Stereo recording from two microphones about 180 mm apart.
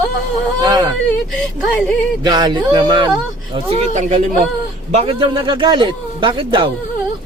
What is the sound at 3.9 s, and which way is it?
Speech, 45° right (ahead or behind).